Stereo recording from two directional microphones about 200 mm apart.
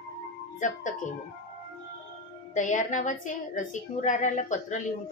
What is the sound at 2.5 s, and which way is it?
Speech, 40° left (ahead or behind).